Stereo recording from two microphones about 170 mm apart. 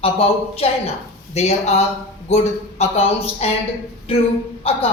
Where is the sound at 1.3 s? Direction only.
40° left (ahead or behind).